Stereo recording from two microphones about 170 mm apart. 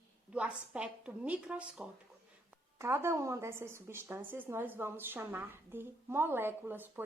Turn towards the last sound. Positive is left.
turn(degrees=-10)  # may be behind; listen again after turning